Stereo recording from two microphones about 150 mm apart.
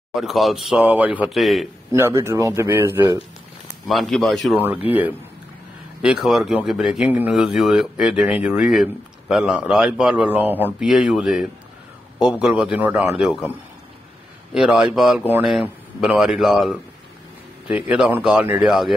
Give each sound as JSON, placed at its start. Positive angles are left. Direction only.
{"t": 0.1, "sound": "speech", "side_deg": 0}
{"t": 1.9, "sound": "a man's voice", "side_deg": -20}
{"t": 3.9, "sound": "speech", "side_deg": 0}
{"t": 4.6, "sound": "a man's voice", "side_deg": -10}